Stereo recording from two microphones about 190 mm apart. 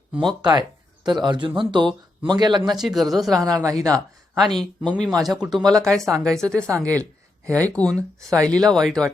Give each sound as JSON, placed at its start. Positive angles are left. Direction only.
{"t": 0.1, "sound": "speech", "side_deg": 0}
{"t": 1.0, "sound": "speech", "side_deg": -25}
{"t": 2.6, "sound": "speech", "side_deg": 0}
{"t": 3.4, "sound": "speech", "side_deg": -20}
{"t": 4.4, "sound": "speech", "side_deg": 0}